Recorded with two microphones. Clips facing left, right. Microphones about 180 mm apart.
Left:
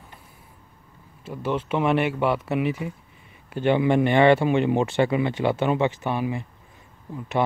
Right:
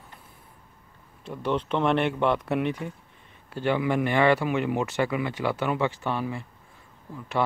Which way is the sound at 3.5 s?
20° left (ahead or behind).